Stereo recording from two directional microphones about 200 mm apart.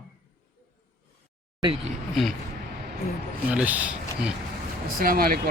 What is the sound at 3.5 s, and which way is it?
Speech, 5° right (ahead or behind).